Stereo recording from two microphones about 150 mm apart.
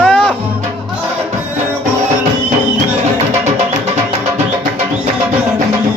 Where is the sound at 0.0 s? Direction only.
5° left (ahead or behind).